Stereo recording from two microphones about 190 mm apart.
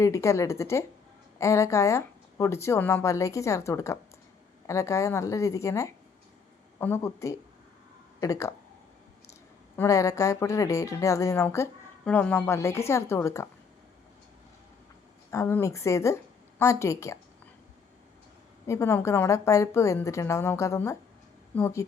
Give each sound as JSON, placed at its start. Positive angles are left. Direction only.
{"t": 0.0, "sound": "speech", "side_deg": 15}
{"t": 9.7, "sound": "speech", "side_deg": 15}
{"t": 15.3, "sound": "speech", "side_deg": 15}
{"t": 18.7, "sound": "speech", "side_deg": 15}